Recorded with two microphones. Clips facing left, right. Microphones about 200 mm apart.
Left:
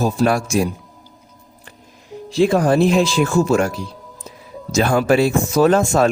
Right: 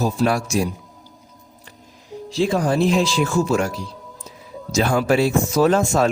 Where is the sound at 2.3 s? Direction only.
60° left (ahead or behind).